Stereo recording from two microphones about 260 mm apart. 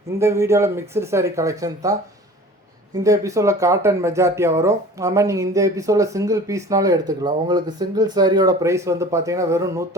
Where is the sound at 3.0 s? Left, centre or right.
Centre.